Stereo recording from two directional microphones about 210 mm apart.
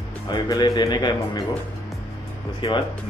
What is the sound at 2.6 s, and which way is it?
Speech, 25° left (ahead or behind).